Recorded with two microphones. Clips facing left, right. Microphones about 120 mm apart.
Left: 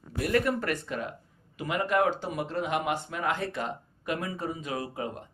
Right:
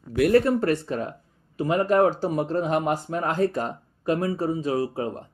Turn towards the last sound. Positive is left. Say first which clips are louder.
# right 8 dB
turn(degrees=-30)  # may be behind; listen again after turning